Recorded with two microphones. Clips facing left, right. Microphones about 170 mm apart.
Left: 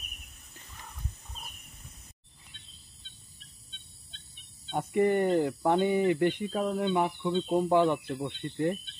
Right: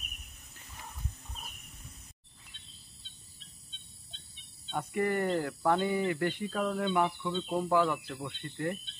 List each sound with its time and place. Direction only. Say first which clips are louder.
4.6 s speech: left 5 dB; 20° left (ahead or behind)